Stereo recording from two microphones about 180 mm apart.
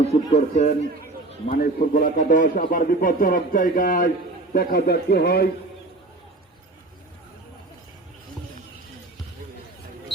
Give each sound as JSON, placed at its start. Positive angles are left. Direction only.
{"t": 0.0, "sound": "a man's voice", "side_deg": 35}
{"t": 1.5, "sound": "a man's voice", "side_deg": 50}